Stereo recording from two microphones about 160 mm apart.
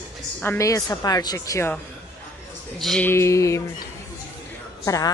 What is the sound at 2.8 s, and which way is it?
Speech, 5° left (ahead or behind).